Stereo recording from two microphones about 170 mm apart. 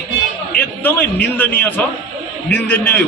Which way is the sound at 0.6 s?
10° left (ahead or behind).